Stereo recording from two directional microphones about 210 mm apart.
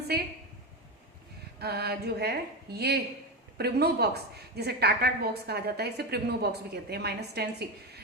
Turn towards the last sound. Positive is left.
turn(degrees=-50)  # may be behind; listen again after turning